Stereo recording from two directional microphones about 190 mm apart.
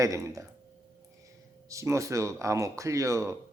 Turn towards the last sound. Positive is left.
turn(degrees=-15)  # may be behind; listen again after turning